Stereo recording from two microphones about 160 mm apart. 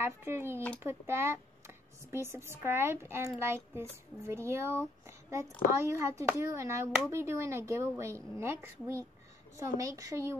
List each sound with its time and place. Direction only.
0.0 s speech: 15° right (ahead or behind)